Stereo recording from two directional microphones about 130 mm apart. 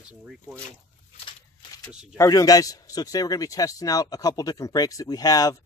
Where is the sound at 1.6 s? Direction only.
35° left (ahead or behind).